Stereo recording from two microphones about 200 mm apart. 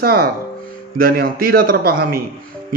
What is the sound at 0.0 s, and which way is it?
A man's voice, 50° right (ahead or behind).